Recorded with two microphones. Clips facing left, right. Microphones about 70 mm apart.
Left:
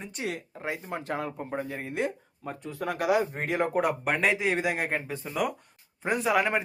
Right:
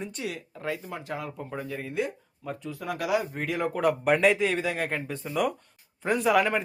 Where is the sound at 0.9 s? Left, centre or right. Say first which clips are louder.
Left 3 dB; left.